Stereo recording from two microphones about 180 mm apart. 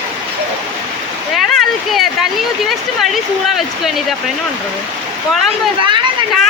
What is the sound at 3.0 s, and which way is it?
A woman's voice, centre (ahead or behind).